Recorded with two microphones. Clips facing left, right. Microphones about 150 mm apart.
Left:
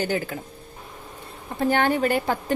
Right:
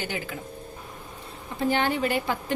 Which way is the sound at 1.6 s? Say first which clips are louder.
Left 3 dB; 50° left (ahead or behind).